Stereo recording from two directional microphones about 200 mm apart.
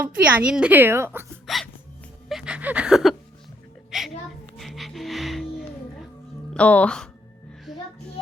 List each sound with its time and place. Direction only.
0.0 s a woman's voice: 5° right (ahead or behind)
1.5 s music: centre (ahead or behind)
2.3 s a sound: 5° right (ahead or behind)
4.5 s music: centre (ahead or behind)
6.5 s speech: 5° left (ahead or behind)